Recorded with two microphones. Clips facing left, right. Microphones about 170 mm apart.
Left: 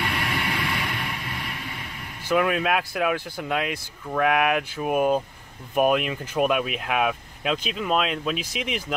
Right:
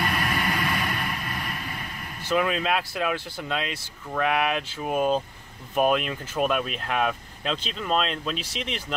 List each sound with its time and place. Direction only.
0.0 s vehicle: 45° right (ahead or behind)
2.2 s speech: 10° left (ahead or behind)